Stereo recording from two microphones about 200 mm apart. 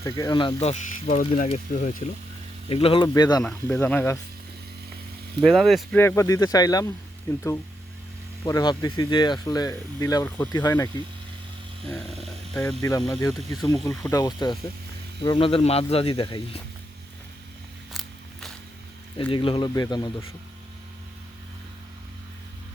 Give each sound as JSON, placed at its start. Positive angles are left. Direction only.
{"t": 0.0, "sound": "speech", "side_deg": 15}
{"t": 2.6, "sound": "speech", "side_deg": 30}
{"t": 3.4, "sound": "speech", "side_deg": 10}
{"t": 5.4, "sound": "speech", "side_deg": 0}
{"t": 6.0, "sound": "speech", "side_deg": 15}
{"t": 8.4, "sound": "speech", "side_deg": 20}
{"t": 11.9, "sound": "speech", "side_deg": 5}
{"t": 14.1, "sound": "speech", "side_deg": 20}
{"t": 17.9, "sound": "a sound", "side_deg": 0}
{"t": 19.1, "sound": "speech", "side_deg": 25}